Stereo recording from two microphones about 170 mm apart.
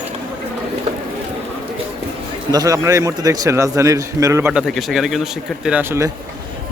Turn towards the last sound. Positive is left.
turn(degrees=-15)  # may be behind; listen again after turning